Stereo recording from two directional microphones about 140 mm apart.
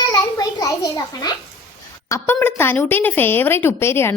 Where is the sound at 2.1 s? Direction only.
15° left (ahead or behind).